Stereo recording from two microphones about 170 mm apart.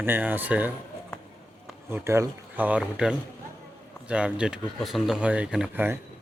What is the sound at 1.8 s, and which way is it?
Speech, 15° right (ahead or behind).